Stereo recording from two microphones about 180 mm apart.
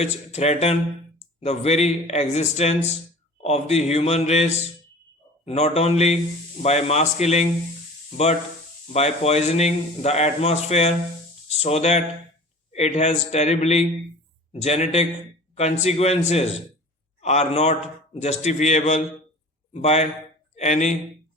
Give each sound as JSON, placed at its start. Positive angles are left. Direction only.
{"t": 0.0, "sound": "a man's voice", "side_deg": 40}
{"t": 8.9, "sound": "a man's voice", "side_deg": 35}